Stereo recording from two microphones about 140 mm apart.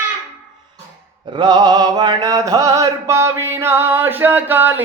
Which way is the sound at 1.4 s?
30° right (ahead or behind).